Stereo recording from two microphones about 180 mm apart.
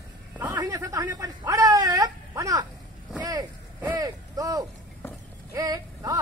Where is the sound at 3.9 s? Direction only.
20° right (ahead or behind).